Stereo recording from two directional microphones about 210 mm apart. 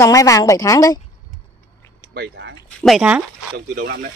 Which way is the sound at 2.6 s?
Centre (ahead or behind).